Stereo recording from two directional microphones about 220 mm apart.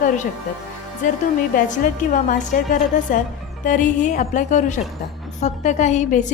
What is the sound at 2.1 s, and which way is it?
A woman's voice, 35° left (ahead or behind).